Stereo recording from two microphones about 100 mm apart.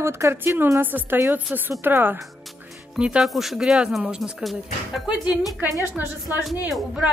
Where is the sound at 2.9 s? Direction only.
10° right (ahead or behind).